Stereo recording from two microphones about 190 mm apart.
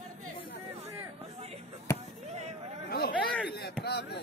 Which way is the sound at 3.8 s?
55° left (ahead or behind).